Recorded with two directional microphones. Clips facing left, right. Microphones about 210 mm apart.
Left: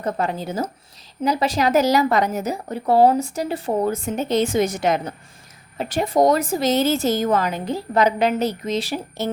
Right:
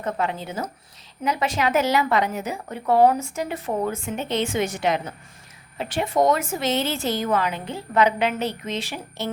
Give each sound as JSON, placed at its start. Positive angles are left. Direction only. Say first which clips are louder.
{"t": 0.0, "sound": "a woman's voice", "louder": "left 3 dB", "side_deg": 40}